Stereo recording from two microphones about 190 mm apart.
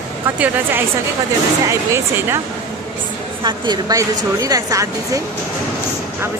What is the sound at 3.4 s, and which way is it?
A woman's voice, 25° right (ahead or behind).